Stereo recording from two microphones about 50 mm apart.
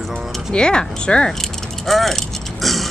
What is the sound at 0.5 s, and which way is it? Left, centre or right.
Speech, centre.